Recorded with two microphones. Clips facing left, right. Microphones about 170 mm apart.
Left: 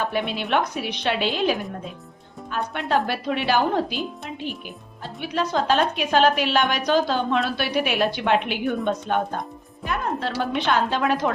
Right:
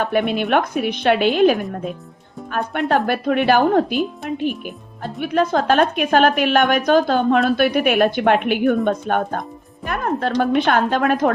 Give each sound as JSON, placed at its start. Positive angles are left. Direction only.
{"t": 0.0, "sound": "a woman's voice", "side_deg": -55}